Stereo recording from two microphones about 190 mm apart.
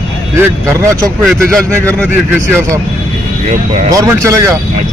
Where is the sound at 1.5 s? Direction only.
5° left (ahead or behind).